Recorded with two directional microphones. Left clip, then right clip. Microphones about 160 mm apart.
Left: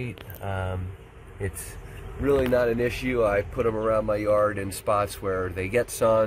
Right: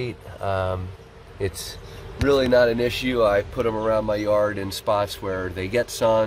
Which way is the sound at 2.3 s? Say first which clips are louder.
Right 5 dB; 20° right (ahead or behind).